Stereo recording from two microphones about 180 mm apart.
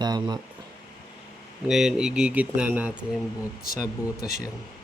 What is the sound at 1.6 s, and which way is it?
Speech, 5° right (ahead or behind).